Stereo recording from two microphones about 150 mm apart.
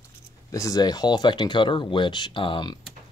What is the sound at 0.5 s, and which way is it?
Speech, 20° left (ahead or behind).